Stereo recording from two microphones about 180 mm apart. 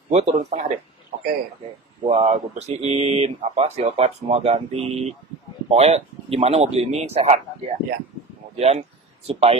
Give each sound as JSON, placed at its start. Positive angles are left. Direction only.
{"t": 0.1, "sound": "speech", "side_deg": -40}
{"t": 2.0, "sound": "speech", "side_deg": -30}